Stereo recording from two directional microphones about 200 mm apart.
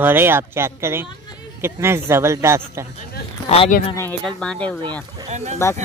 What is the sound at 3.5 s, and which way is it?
Speech, 30° left (ahead or behind).